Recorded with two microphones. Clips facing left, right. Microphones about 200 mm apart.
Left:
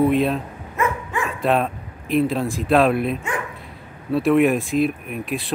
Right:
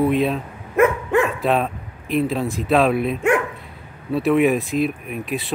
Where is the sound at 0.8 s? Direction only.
60° right (ahead or behind).